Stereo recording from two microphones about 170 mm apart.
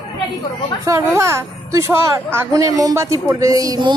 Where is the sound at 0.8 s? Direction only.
15° right (ahead or behind).